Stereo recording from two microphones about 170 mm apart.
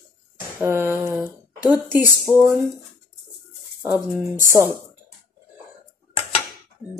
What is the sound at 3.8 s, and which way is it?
Speech, 15° right (ahead or behind).